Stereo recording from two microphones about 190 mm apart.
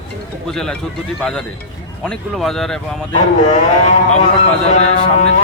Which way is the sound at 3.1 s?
40° left (ahead or behind).